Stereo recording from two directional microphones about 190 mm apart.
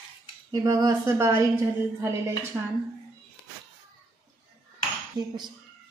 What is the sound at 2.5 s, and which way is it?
Speech, 10° right (ahead or behind).